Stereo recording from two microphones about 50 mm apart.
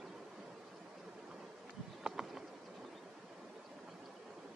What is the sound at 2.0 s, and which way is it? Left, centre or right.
Bird, centre.